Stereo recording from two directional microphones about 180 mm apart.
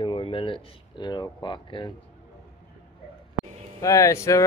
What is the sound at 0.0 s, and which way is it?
Speech, 30° left (ahead or behind).